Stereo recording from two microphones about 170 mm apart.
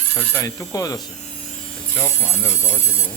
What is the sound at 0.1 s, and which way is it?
Speech, 10° right (ahead or behind).